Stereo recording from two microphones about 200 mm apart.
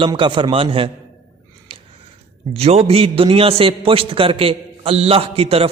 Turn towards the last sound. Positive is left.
turn(degrees=-30)  # may be behind; listen again after turning